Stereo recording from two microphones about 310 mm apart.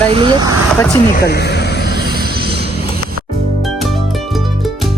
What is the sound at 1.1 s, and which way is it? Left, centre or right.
Speech, left.